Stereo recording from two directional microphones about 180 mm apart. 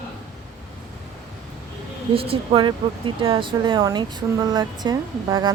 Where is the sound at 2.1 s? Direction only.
30° right (ahead or behind).